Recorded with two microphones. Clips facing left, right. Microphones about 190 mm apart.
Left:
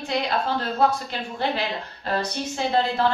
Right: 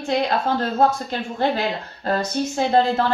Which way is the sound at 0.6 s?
45° right (ahead or behind).